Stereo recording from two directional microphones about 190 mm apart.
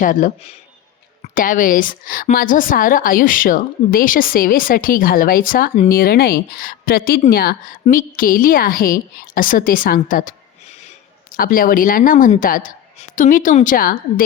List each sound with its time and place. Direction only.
0.0 s a woman's voice: 45° left (ahead or behind)